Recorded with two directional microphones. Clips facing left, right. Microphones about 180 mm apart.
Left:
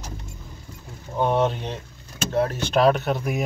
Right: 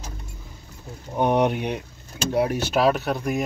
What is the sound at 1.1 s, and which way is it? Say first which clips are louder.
Speech: right 1 dB; 15° right (ahead or behind).